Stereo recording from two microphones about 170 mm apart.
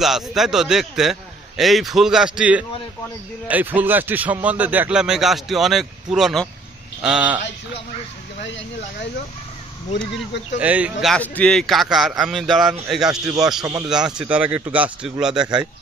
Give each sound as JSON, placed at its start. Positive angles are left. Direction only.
{"t": 0.0, "sound": "speech", "side_deg": 0}
{"t": 9.9, "sound": "speech", "side_deg": 90}
{"t": 10.6, "sound": "speech", "side_deg": -10}
{"t": 11.1, "sound": "speech", "side_deg": 5}
{"t": 15.4, "sound": "a man's voice", "side_deg": -20}